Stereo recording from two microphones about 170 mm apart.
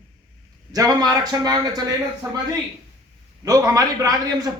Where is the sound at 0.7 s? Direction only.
20° right (ahead or behind).